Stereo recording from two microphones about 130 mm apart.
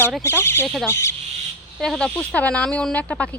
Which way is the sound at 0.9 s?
20° left (ahead or behind).